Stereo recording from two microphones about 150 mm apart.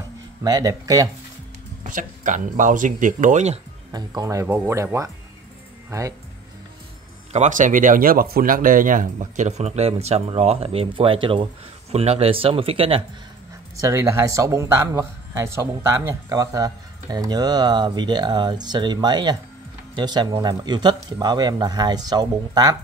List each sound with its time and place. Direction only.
0.4 s speech: 25° right (ahead or behind)
1.9 s speech: 60° right (ahead or behind)
3.9 s speech: 25° right (ahead or behind)
5.9 s speech: 20° right (ahead or behind)
7.3 s speech: 55° right (ahead or behind); by 13.0 s 35° right (ahead or behind)
13.7 s speech: 20° right (ahead or behind)